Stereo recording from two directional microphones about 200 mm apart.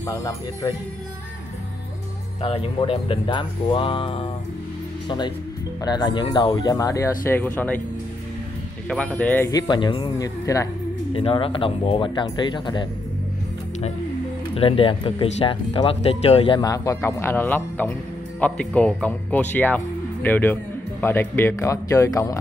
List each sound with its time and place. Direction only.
0.0 s speech: 15° left (ahead or behind)
2.4 s speech: 25° left (ahead or behind); by 7.8 s 10° left (ahead or behind)
8.8 s speech: 5° left (ahead or behind)
11.1 s speech: 30° left (ahead or behind)
14.5 s speech: 25° left (ahead or behind)